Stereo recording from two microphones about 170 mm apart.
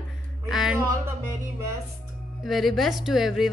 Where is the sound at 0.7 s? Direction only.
15° right (ahead or behind).